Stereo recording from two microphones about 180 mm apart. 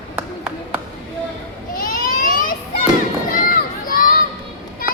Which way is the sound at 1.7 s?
50° left (ahead or behind).